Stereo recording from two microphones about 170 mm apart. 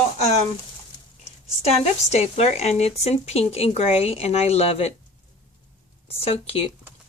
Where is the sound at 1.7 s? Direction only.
40° left (ahead or behind).